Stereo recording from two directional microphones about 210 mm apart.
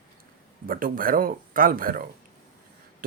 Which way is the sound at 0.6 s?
40° right (ahead or behind).